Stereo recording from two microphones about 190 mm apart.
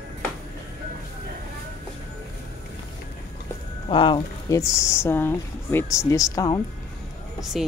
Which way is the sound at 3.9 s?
25° left (ahead or behind).